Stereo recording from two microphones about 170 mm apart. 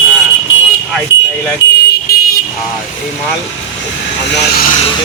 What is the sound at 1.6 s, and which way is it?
Vehicle, 90° left.